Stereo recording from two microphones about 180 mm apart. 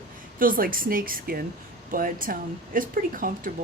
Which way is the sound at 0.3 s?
50° right (ahead or behind).